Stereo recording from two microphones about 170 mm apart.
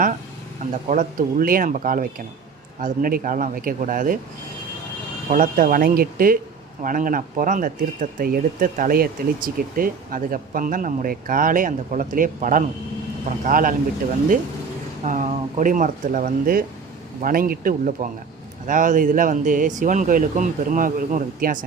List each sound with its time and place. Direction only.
0.7 s speech: 50° right (ahead or behind)
5.3 s speech: 50° right (ahead or behind)
15.0 s speech: 50° right (ahead or behind)